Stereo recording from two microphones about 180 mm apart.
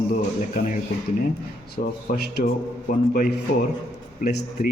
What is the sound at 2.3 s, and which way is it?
A man's voice, 55° left (ahead or behind).